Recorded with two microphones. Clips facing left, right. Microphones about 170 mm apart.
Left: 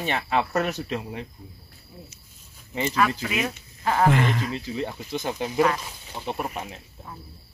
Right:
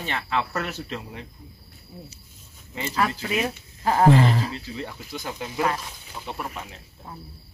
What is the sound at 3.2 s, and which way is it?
Speech, 30° right (ahead or behind).